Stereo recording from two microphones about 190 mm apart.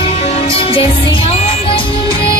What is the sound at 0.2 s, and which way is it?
Music, 30° left (ahead or behind).